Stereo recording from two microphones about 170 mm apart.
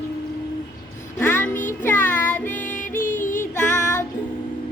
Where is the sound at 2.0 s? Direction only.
50° left (ahead or behind).